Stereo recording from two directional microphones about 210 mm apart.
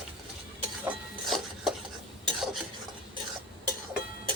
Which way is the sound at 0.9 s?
Centre (ahead or behind).